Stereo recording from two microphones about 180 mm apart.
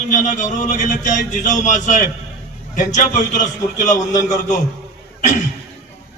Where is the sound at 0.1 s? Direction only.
45° left (ahead or behind).